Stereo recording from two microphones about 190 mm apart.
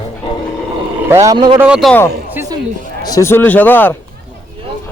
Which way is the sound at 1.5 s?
5° right (ahead or behind).